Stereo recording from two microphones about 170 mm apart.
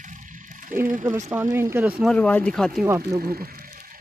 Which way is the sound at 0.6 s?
50° right (ahead or behind).